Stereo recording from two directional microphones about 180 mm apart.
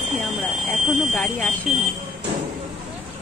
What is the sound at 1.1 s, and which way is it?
Speech, 5° left (ahead or behind).